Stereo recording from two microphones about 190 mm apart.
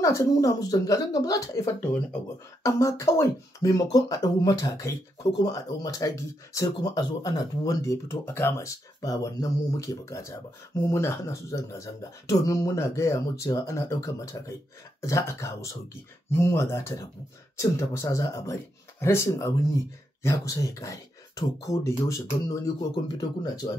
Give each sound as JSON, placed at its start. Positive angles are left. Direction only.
{"t": 0.0, "sound": "speech", "side_deg": 15}